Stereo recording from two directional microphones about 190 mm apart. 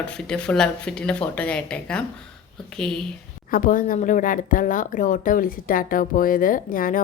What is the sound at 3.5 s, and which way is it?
A woman's voice, 45° left (ahead or behind).